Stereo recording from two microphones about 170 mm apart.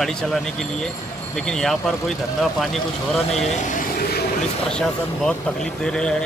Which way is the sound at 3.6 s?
55° left (ahead or behind).